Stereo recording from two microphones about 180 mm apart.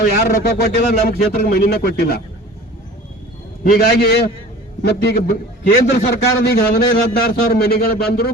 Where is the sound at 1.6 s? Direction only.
55° left (ahead or behind).